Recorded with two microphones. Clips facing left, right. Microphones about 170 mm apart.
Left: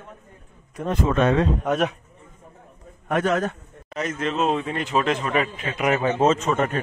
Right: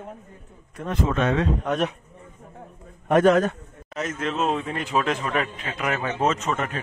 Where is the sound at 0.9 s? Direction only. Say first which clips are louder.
Left 3 dB; 40° left (ahead or behind).